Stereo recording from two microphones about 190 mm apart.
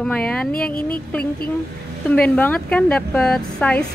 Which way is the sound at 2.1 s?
5° left (ahead or behind).